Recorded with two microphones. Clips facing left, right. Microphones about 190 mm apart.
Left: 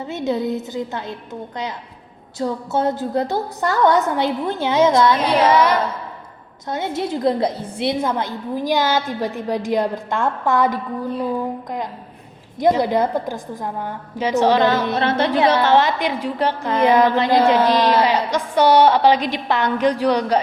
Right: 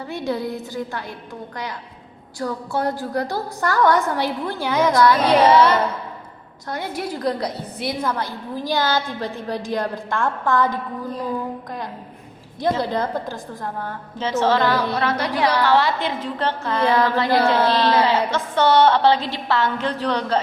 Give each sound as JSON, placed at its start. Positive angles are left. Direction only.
{"t": 0.0, "sound": "a woman's voice", "side_deg": 20}
{"t": 12.5, "sound": "a woman's voice", "side_deg": 20}